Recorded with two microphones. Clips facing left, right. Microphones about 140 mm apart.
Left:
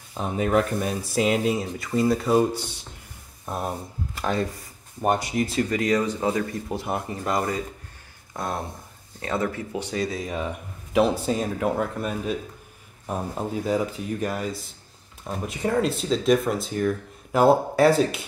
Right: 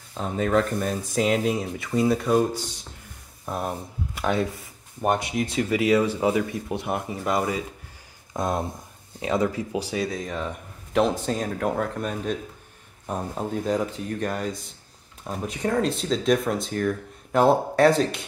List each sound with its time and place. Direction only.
0.2 s speech: 10° left (ahead or behind)
3.4 s speech: centre (ahead or behind)
8.3 s speech: 20° right (ahead or behind); by 18.2 s 5° left (ahead or behind)